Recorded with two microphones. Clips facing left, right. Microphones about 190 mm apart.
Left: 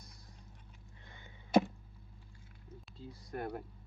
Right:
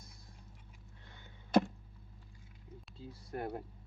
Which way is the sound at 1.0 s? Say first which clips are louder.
Left 1 dB; 10° left (ahead or behind).